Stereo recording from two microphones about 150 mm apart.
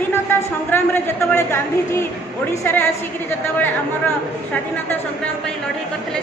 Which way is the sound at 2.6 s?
15° left (ahead or behind).